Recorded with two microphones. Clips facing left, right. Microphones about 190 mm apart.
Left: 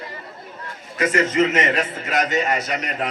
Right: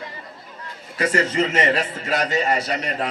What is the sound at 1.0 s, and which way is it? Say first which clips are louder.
A man's voice: left 2 dB; 35° right (ahead or behind).